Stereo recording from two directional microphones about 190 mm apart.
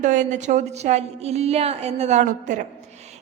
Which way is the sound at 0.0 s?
40° right (ahead or behind).